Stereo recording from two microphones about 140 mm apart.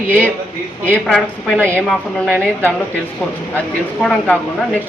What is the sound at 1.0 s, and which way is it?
Speech, centre (ahead or behind).